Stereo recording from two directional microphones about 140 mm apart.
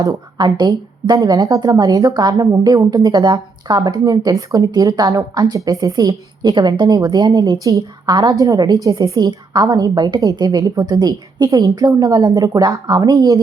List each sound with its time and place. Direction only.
0.0 s a woman's voice: 30° right (ahead or behind)